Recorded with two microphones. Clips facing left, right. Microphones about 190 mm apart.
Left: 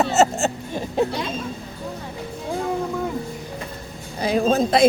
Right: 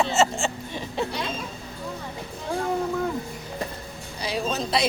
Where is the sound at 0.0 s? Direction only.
40° left (ahead or behind).